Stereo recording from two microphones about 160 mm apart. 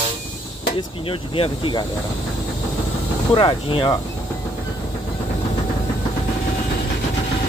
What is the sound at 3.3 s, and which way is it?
Speech, 30° left (ahead or behind).